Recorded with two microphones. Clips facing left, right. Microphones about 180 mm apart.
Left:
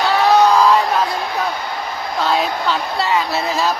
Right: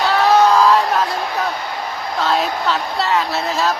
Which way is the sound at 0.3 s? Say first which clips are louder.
Even; centre (ahead or behind).